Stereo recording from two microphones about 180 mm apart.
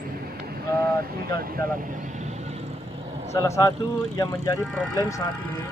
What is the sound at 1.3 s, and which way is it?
Speech, 55° right (ahead or behind).